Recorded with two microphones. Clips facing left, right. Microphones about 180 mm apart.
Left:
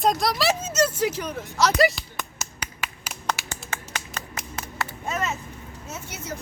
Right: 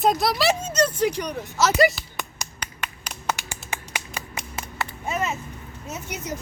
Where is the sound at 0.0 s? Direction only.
Centre (ahead or behind).